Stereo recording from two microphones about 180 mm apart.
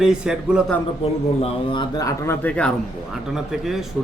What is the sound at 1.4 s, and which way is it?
Speech, 25° left (ahead or behind).